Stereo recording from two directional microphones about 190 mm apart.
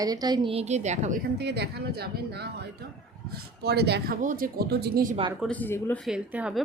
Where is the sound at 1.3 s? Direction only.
60° right (ahead or behind).